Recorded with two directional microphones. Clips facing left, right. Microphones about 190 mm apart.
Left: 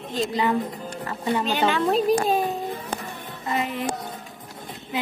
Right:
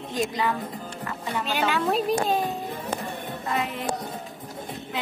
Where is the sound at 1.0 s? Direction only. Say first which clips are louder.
Left 6 dB; 35° left (ahead or behind).